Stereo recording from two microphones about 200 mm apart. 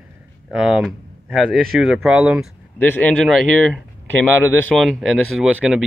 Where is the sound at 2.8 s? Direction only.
10° left (ahead or behind).